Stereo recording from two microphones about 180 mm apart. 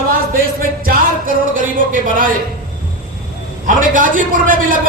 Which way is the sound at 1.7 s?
50° right (ahead or behind).